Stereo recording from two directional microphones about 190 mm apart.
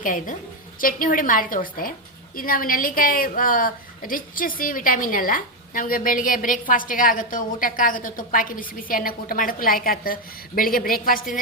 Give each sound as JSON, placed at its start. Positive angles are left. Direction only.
{"t": 0.0, "sound": "a woman's voice", "side_deg": 45}